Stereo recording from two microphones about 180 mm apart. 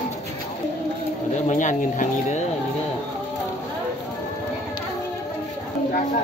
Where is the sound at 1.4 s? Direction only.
45° left (ahead or behind).